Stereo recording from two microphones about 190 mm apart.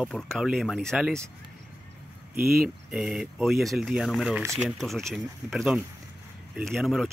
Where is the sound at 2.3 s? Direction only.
50° right (ahead or behind).